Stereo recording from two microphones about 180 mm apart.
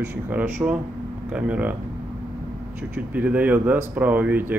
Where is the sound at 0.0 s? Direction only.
10° right (ahead or behind).